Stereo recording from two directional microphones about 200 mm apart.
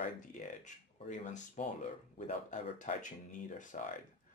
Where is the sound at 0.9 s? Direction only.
35° left (ahead or behind).